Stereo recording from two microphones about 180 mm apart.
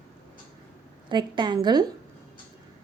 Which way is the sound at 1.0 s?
25° right (ahead or behind).